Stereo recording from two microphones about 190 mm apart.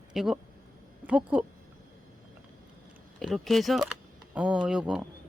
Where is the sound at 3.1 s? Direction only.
Centre (ahead or behind).